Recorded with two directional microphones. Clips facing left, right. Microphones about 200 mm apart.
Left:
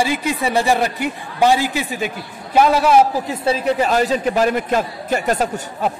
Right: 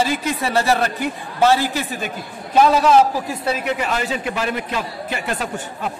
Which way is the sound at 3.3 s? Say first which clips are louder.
Left 4 dB; 30° left (ahead or behind).